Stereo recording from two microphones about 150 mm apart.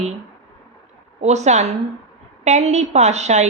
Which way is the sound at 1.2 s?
50° right (ahead or behind).